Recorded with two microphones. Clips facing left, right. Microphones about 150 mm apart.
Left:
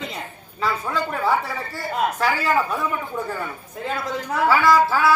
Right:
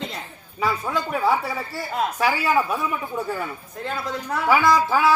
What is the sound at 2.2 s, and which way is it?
Speech, 15° right (ahead or behind).